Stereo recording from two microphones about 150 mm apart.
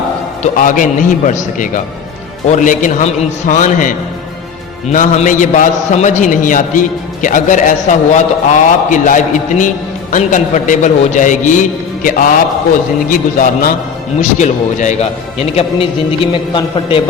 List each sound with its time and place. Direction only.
0.4 s a man's voice: 60° left (ahead or behind)
14.2 s speech: 55° left (ahead or behind)
15.4 s a man's voice: 40° left (ahead or behind)